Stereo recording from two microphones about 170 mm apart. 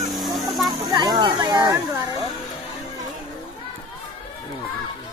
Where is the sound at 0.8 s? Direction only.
25° right (ahead or behind).